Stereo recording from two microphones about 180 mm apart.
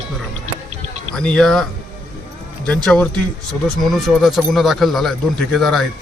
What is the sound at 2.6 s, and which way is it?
A man's voice, 5° left (ahead or behind).